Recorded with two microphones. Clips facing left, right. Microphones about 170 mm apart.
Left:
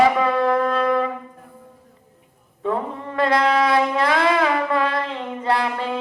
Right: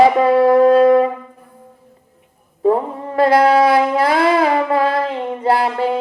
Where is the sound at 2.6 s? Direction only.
35° right (ahead or behind).